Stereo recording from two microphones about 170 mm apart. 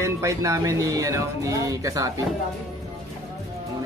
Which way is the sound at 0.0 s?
20° right (ahead or behind).